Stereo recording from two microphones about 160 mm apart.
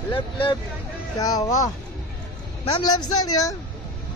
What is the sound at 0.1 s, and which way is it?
Speech, 30° left (ahead or behind).